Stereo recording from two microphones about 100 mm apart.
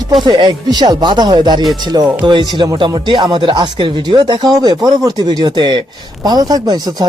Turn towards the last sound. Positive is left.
turn(degrees=-40)  # may be behind; listen again after turning